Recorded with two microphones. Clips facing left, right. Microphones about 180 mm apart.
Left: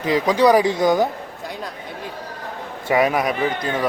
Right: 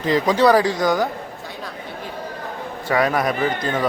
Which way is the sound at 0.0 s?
10° left (ahead or behind).